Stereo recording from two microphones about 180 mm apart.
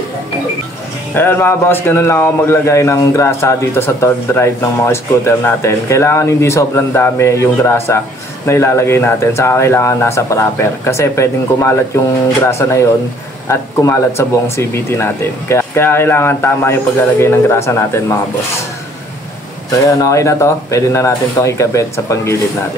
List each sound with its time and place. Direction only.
1.1 s speech: 10° left (ahead or behind)
19.8 s speech: 20° left (ahead or behind)